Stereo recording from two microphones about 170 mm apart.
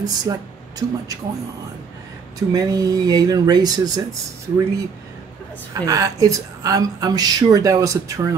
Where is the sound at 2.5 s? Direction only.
20° right (ahead or behind).